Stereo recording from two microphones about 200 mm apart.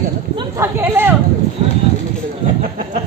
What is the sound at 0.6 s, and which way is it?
Speech, 10° right (ahead or behind).